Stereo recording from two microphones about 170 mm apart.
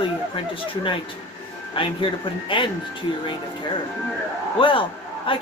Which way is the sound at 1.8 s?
30° left (ahead or behind).